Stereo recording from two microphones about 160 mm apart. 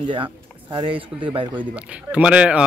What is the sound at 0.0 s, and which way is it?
Speech, 30° right (ahead or behind).